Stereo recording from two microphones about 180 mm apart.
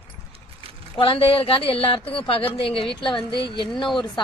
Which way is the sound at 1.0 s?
30° left (ahead or behind).